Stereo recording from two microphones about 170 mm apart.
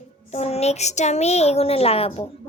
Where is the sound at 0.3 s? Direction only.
40° left (ahead or behind).